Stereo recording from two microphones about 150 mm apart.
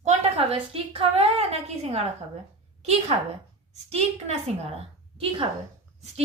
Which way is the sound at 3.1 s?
40° right (ahead or behind).